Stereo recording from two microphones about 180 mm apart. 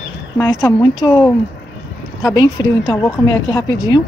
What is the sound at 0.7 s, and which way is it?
A woman's voice, 15° left (ahead or behind).